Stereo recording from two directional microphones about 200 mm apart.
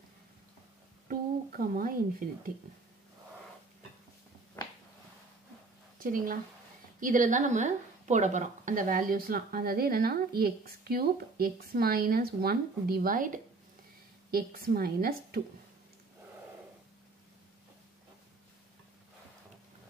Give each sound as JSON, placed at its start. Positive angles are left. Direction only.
{"t": 1.0, "sound": "speech", "side_deg": -45}
{"t": 6.0, "sound": "a woman's voice", "side_deg": -45}